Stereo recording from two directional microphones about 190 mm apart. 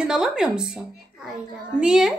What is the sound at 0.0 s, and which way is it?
A woman's voice, 5° right (ahead or behind).